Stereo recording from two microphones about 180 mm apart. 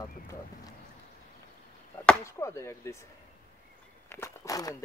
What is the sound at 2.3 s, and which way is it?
Speech, 15° left (ahead or behind).